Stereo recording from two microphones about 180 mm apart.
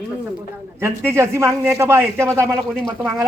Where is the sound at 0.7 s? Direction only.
15° right (ahead or behind).